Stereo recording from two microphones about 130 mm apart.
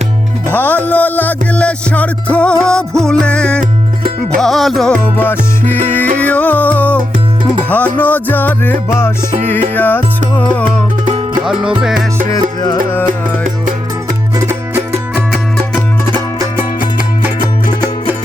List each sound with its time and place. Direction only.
0.5 s music: 15° left (ahead or behind)
5.1 s music: 15° left (ahead or behind)
11.4 s music: 5° right (ahead or behind)
14.3 s music: 20° right (ahead or behind)
16.6 s music: 15° right (ahead or behind)